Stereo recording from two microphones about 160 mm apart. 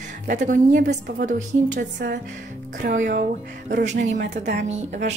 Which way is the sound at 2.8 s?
60° right (ahead or behind).